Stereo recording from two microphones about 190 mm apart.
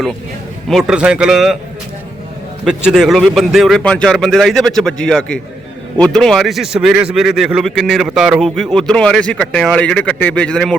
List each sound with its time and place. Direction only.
0.7 s speech: centre (ahead or behind)
2.6 s speech: 5° right (ahead or behind)